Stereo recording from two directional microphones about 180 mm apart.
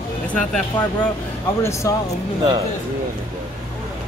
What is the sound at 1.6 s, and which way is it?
Speech, 15° left (ahead or behind).